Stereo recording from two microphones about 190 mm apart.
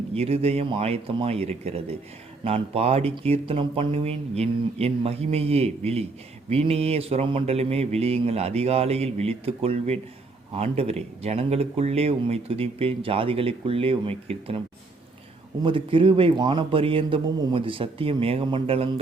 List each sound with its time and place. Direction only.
0.1 s speech: 30° right (ahead or behind)
15.6 s a man's voice: 25° right (ahead or behind)